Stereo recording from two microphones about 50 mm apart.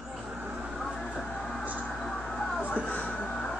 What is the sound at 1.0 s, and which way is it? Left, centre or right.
Speech, centre.